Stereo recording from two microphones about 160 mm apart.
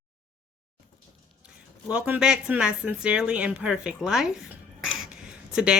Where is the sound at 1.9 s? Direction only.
5° right (ahead or behind).